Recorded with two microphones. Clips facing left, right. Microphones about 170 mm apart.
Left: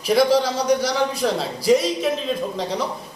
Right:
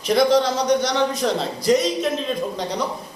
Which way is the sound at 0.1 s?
5° left (ahead or behind).